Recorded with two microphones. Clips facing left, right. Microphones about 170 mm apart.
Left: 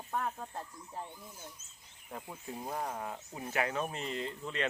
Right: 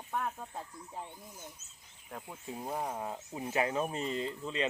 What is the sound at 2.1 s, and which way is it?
Speech, centre (ahead or behind).